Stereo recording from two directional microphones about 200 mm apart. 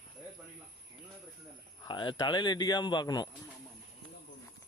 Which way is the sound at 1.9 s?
25° left (ahead or behind).